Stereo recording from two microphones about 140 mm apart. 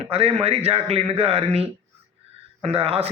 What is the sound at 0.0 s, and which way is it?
Speech, 45° right (ahead or behind).